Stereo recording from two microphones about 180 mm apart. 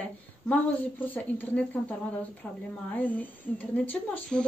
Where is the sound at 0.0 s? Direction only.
10° left (ahead or behind).